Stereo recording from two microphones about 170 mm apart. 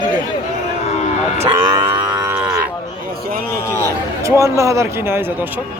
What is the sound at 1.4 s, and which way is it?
Cattle, 30° right (ahead or behind).